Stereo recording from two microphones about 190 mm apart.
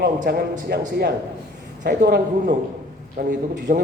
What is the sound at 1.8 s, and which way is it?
A man's voice, 60° right (ahead or behind).